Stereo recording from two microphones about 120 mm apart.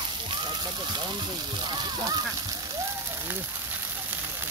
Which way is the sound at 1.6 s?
35° right (ahead or behind).